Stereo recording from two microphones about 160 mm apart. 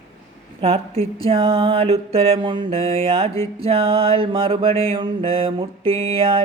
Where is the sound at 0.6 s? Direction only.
40° right (ahead or behind).